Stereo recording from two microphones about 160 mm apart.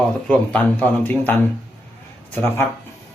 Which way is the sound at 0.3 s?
10° left (ahead or behind).